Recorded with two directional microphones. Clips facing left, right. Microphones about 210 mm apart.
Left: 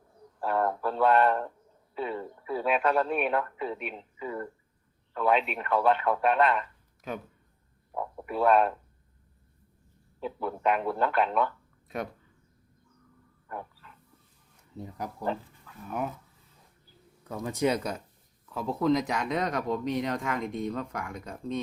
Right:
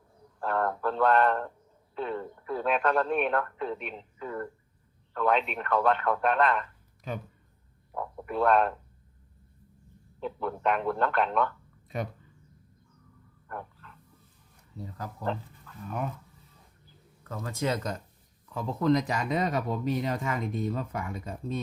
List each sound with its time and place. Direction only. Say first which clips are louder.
0.3 s speech: left 1 dB; 5° left (ahead or behind)
10.2 s speech: even; 5° left (ahead or behind)
13.5 s wild animals: left 1 dB; 5° left (ahead or behind)
14.8 s speech: left 2 dB; 20° left (ahead or behind)
15.3 s speech: right 1 dB; 5° left (ahead or behind)
17.2 s speech: left 3 dB; 15° left (ahead or behind)
18.4 s speech: even; centre (ahead or behind)